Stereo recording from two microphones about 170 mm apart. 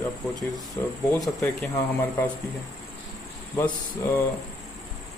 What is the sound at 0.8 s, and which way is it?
Speech, 15° left (ahead or behind).